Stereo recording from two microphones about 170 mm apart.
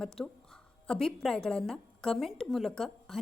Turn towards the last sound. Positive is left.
turn(degrees=0)  # may be behind; listen again after turning